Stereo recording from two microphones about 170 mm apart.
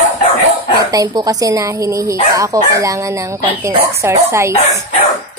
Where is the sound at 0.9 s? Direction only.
20° right (ahead or behind).